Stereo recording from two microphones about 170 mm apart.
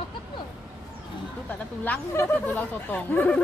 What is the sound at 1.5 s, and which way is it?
Speech, 10° left (ahead or behind).